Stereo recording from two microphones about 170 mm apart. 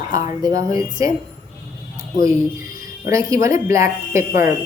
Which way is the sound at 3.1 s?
20° right (ahead or behind).